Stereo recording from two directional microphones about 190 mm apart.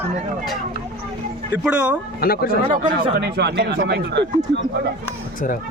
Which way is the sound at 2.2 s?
50° left (ahead or behind).